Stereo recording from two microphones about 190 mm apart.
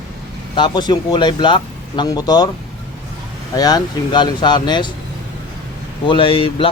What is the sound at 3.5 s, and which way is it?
Speech, 20° left (ahead or behind).